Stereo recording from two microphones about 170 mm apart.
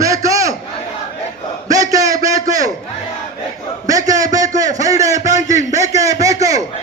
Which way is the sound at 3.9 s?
20° right (ahead or behind).